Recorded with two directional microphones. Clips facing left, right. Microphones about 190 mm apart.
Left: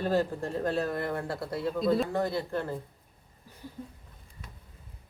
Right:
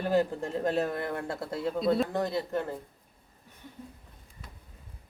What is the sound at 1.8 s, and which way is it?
Speech, centre (ahead or behind).